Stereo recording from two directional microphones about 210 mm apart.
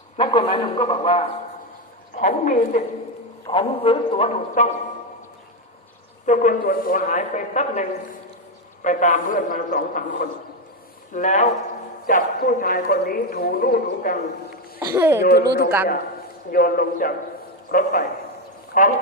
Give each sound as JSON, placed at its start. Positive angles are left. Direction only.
{"t": 0.2, "sound": "a man's voice", "side_deg": 25}
{"t": 3.4, "sound": "a man's voice", "side_deg": 25}
{"t": 6.2, "sound": "a man's voice", "side_deg": 35}
{"t": 14.8, "sound": "speech", "side_deg": -10}
{"t": 15.2, "sound": "speech", "side_deg": 45}
{"t": 16.5, "sound": "a man's voice", "side_deg": 45}